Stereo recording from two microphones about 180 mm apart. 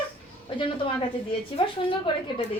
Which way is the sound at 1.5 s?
30° left (ahead or behind).